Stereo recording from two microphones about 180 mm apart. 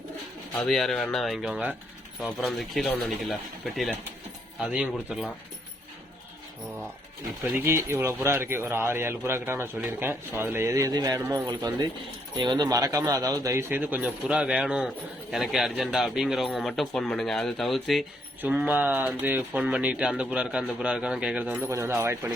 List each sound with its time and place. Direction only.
0.5 s speech: 5° left (ahead or behind)
7.5 s speech: 15° right (ahead or behind)